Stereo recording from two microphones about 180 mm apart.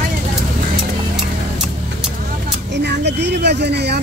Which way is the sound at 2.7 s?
70° right (ahead or behind).